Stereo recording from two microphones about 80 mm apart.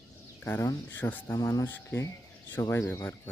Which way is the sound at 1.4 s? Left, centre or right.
Left.